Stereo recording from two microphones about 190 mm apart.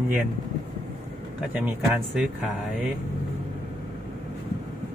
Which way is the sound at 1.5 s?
5° right (ahead or behind).